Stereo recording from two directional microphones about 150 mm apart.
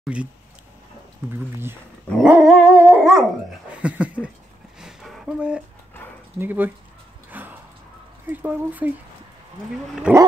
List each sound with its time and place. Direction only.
0.0 s speech: 5° right (ahead or behind)
1.3 s speech: 15° right (ahead or behind)
2.2 s dog: 5° right (ahead or behind)
3.7 s speech: 10° right (ahead or behind)
4.7 s a sound: centre (ahead or behind)
6.4 s speech: 15° right (ahead or behind)
7.2 s a sound: 10° right (ahead or behind)
8.3 s speech: 10° right (ahead or behind)
10.1 s speech: 10° right (ahead or behind)